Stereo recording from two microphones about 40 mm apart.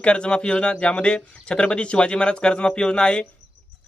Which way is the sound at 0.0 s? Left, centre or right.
Left.